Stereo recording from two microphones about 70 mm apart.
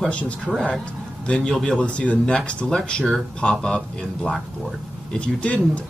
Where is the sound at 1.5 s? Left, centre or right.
Centre.